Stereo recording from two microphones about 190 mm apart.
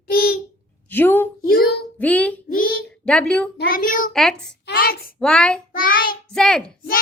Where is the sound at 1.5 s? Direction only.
55° left (ahead or behind).